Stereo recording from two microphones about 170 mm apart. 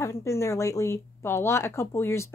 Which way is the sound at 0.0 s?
15° left (ahead or behind).